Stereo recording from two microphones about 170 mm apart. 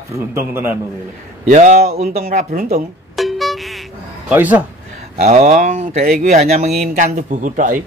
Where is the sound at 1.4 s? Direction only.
50° right (ahead or behind).